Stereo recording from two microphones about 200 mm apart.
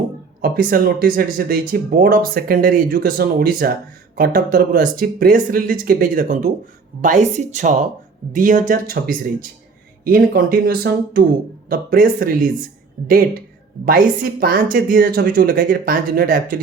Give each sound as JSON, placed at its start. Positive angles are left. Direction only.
{"t": 0.4, "sound": "speech", "side_deg": -45}